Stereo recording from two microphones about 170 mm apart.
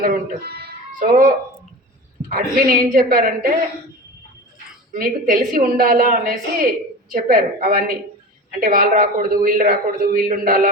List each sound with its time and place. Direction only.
0.0 s speech: 65° right (ahead or behind)
0.9 s a man's voice: 55° right (ahead or behind)
2.3 s a man's voice: 60° right (ahead or behind)
4.9 s a man's voice: 55° right (ahead or behind)